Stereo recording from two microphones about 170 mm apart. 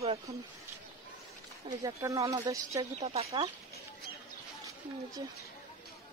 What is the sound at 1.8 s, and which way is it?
Speech, 20° right (ahead or behind).